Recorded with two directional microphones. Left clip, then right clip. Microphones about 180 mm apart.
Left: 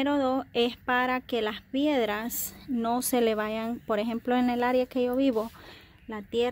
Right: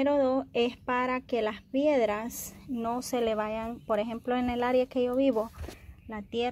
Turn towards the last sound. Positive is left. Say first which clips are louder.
# left 3 dB
turn(degrees=15)  # may be behind; listen again after turning